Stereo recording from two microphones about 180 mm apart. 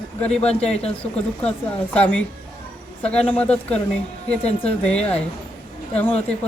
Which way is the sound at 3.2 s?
10° left (ahead or behind).